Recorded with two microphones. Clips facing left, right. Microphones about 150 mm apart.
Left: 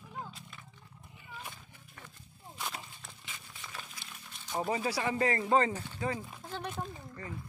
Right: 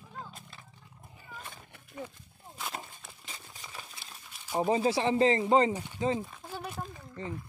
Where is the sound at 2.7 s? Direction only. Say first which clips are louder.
Right 3 dB; 40° right (ahead or behind).